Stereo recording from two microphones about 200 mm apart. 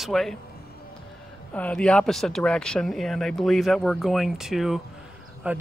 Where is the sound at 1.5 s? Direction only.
5° left (ahead or behind).